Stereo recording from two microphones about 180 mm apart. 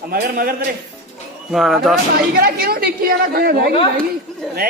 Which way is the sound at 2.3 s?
55° right (ahead or behind).